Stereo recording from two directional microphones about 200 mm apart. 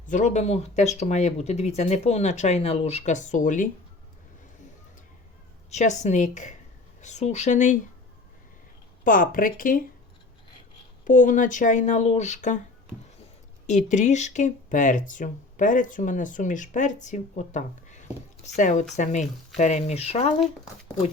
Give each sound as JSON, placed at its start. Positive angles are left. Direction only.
{"t": 0.1, "sound": "speech", "side_deg": 35}
{"t": 5.7, "sound": "speech", "side_deg": 35}
{"t": 9.0, "sound": "speech", "side_deg": 45}
{"t": 11.0, "sound": "speech", "side_deg": 40}
{"t": 13.7, "sound": "speech", "side_deg": 35}